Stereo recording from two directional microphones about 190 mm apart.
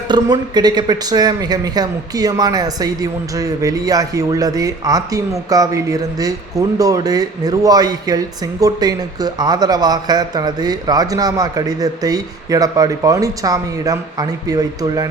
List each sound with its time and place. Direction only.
0.1 s speech: 20° right (ahead or behind)